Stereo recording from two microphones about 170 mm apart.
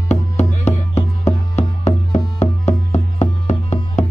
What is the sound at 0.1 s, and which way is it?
Music, 40° left (ahead or behind).